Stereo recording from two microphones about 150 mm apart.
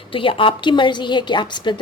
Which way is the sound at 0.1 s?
35° left (ahead or behind).